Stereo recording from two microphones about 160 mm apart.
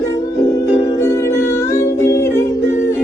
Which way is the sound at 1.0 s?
15° left (ahead or behind).